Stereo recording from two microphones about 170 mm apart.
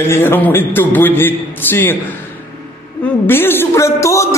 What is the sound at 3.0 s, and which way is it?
Speech, 10° left (ahead or behind).